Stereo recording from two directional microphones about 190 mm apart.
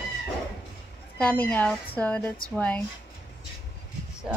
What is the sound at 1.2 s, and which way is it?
A woman's voice, 5° left (ahead or behind).